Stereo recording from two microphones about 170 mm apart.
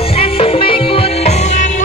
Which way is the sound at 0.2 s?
35° left (ahead or behind).